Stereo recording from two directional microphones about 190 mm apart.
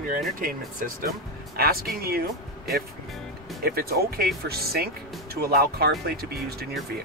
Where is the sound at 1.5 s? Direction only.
50° right (ahead or behind).